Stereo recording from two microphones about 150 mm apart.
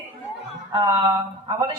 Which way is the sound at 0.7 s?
30° right (ahead or behind).